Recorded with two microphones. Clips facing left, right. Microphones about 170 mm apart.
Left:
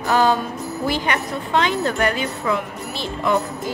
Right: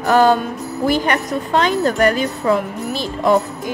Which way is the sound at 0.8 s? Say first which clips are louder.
Right 6 dB; 45° right (ahead or behind).